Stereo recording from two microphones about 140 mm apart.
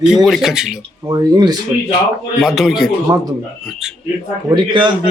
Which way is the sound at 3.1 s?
25° right (ahead or behind).